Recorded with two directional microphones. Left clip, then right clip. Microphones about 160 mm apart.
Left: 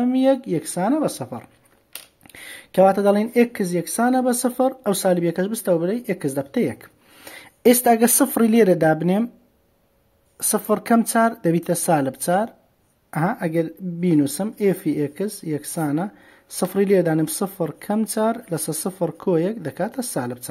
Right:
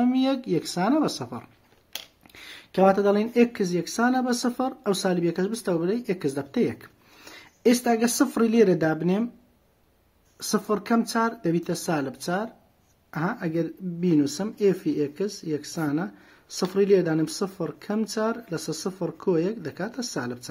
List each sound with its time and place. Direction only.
0.0 s speech: 20° left (ahead or behind)
2.2 s speech: 35° left (ahead or behind)
7.2 s speech: 50° left (ahead or behind)
10.4 s speech: 40° left (ahead or behind)